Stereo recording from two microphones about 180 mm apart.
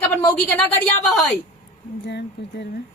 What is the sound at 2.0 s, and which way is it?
Speech, 65° left (ahead or behind).